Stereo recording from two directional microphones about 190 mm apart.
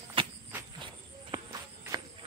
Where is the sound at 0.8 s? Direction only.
20° right (ahead or behind).